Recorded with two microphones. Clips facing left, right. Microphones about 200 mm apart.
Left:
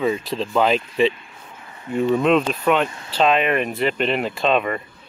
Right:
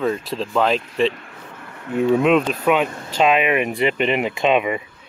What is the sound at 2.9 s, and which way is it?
Speech, 45° right (ahead or behind).